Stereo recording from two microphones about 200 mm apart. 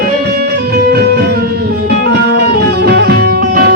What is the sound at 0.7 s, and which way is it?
Music, 50° right (ahead or behind).